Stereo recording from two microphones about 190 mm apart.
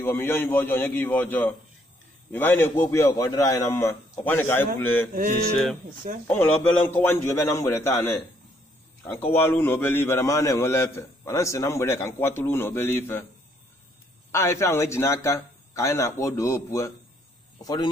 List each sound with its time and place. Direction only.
0.0 s a man's voice: 10° left (ahead or behind)
5.1 s a sound: 45° right (ahead or behind)
6.2 s a man's voice: 5° left (ahead or behind)
14.3 s a man's voice: 15° left (ahead or behind)